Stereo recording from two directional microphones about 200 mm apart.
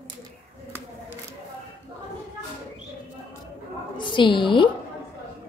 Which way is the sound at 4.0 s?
25° left (ahead or behind).